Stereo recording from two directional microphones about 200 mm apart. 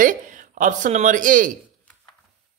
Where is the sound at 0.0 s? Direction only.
40° right (ahead or behind).